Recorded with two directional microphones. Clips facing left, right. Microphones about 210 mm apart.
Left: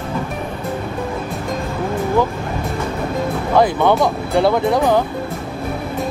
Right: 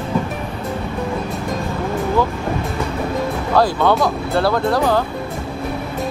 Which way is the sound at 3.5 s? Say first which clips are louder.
Left 1 dB; 20° left (ahead or behind).